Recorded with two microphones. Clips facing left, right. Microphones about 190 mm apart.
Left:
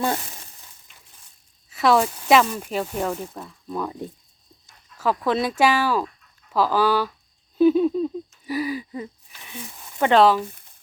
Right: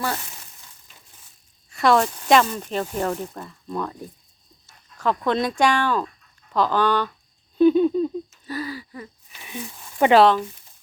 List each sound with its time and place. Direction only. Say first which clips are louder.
1.7 s speech: even; centre (ahead or behind)
8.4 s speech: left 9 dB; 15° left (ahead or behind)
10.0 s speech: right 2 dB; 10° right (ahead or behind)